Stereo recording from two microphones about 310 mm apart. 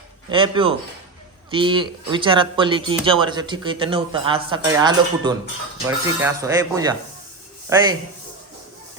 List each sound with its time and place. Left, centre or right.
0.3 s speech: centre